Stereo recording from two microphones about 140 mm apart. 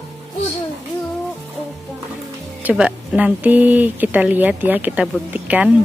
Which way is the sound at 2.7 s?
10° right (ahead or behind).